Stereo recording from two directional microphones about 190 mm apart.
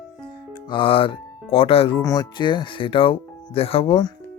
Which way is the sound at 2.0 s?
20° left (ahead or behind).